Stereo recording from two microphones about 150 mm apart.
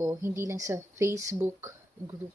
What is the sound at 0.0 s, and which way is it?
Speech, 15° right (ahead or behind).